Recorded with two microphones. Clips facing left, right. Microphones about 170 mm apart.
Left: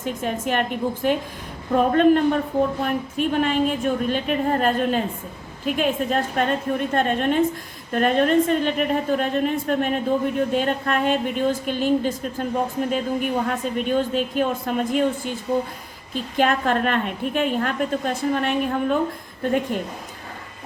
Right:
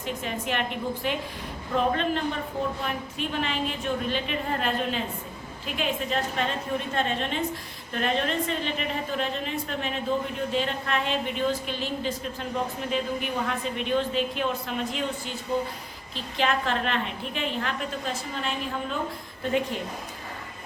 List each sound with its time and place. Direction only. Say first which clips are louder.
0.0 s a woman's voice: left 6 dB; 45° left (ahead or behind)